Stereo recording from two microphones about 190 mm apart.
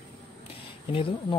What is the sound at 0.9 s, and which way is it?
Speech, 30° left (ahead or behind).